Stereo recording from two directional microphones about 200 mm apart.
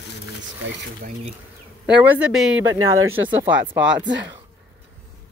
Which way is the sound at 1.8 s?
5° right (ahead or behind).